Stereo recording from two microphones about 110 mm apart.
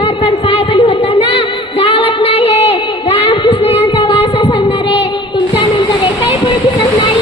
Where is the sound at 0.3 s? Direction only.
55° left (ahead or behind).